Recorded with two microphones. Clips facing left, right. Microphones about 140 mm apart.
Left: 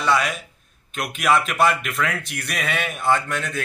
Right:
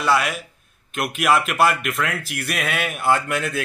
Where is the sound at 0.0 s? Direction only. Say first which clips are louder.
Right 1 dB; centre (ahead or behind).